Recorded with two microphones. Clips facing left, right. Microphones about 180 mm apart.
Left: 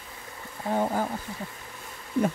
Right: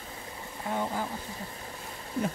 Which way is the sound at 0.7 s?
45° left (ahead or behind).